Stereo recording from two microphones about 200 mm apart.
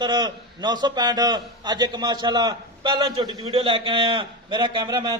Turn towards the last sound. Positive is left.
turn(degrees=-20)  # may be behind; listen again after turning